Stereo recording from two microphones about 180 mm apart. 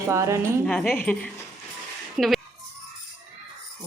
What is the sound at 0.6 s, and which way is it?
Speech, 5° left (ahead or behind).